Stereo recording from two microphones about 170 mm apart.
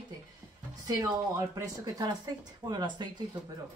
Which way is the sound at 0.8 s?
20° right (ahead or behind).